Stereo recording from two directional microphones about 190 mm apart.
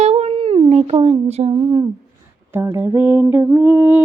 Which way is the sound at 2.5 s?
15° right (ahead or behind).